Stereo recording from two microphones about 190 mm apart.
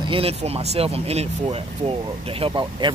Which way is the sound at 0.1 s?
30° right (ahead or behind).